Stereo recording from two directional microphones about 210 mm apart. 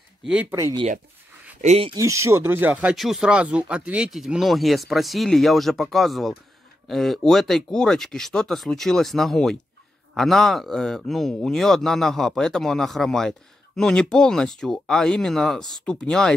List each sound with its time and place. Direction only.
0.2 s speech: 5° right (ahead or behind)
1.6 s speech: 30° right (ahead or behind)
2.0 s speech: 15° right (ahead or behind); by 16.3 s 5° left (ahead or behind)